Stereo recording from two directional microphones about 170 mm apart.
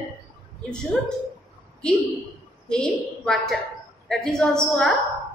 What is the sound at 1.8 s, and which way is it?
A woman's voice, 5° left (ahead or behind).